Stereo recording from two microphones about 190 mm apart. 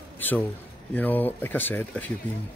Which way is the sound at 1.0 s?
10° left (ahead or behind).